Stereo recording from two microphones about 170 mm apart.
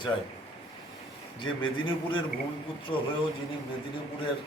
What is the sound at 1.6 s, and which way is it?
Speech, 30° left (ahead or behind).